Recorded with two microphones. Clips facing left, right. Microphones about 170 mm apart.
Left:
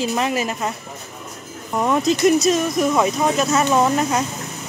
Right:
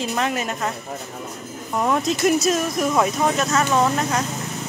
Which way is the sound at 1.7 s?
Centre (ahead or behind).